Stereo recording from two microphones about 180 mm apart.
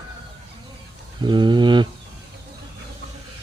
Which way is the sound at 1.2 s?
25° right (ahead or behind).